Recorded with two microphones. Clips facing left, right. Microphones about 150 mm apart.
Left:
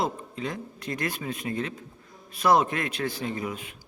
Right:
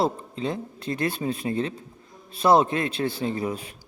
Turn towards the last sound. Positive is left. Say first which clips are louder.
# right 4 dB
turn(degrees=-35)  # may be behind; listen again after turning